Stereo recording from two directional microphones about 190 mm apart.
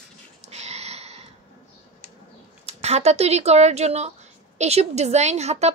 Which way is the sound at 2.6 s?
35° right (ahead or behind).